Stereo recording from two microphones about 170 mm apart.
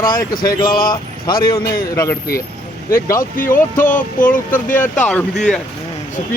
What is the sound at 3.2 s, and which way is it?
Speech, 55° left (ahead or behind).